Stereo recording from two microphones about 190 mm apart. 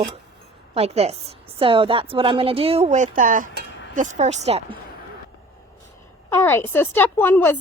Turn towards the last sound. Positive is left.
turn(degrees=10)  # may be behind; listen again after turning